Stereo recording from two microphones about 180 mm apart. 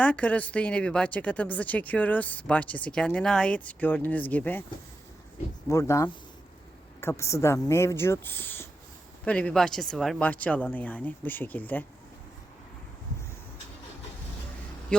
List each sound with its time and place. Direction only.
0.0 s a woman's voice: 5° left (ahead or behind)
5.6 s a woman's voice: 15° left (ahead or behind)